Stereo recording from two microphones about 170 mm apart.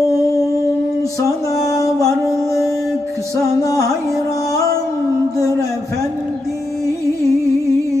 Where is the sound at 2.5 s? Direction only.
Centre (ahead or behind).